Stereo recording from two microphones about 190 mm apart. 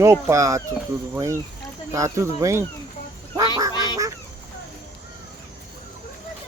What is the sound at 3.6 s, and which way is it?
Quack, 20° right (ahead or behind).